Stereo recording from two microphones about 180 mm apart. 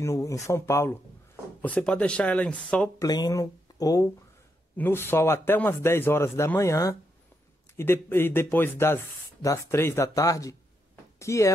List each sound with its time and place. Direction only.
0.0 s speech: 15° left (ahead or behind)
3.0 s speech: 20° left (ahead or behind)